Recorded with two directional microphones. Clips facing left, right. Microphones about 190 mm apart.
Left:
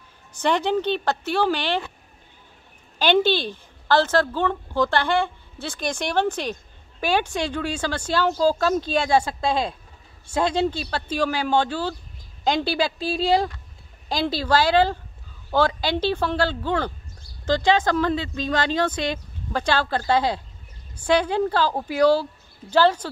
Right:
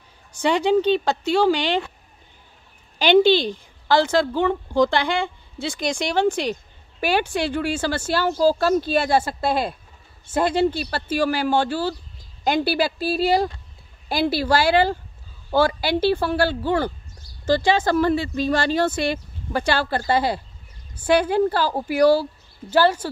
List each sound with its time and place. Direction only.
0.3 s a woman's voice: 10° right (ahead or behind)
3.0 s a woman's voice: 15° right (ahead or behind)